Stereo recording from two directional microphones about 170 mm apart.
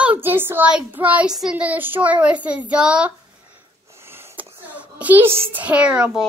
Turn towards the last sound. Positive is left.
turn(degrees=-5)  # may be behind; listen again after turning